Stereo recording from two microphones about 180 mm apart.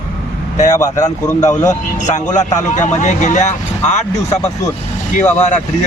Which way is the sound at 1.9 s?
40° left (ahead or behind).